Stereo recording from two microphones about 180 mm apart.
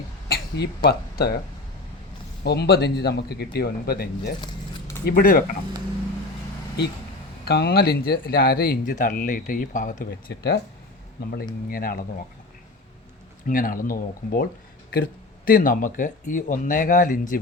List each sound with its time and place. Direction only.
0.3 s a sound: 60° left (ahead or behind)
0.9 s speech: 60° left (ahead or behind)
2.4 s speech: 65° left (ahead or behind)
7.4 s speech: 60° left (ahead or behind)
11.7 s speech: 55° left (ahead or behind)
13.5 s speech: 50° left (ahead or behind)